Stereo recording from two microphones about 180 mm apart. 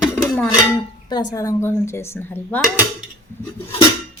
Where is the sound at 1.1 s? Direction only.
20° left (ahead or behind); by 2.7 s 5° left (ahead or behind).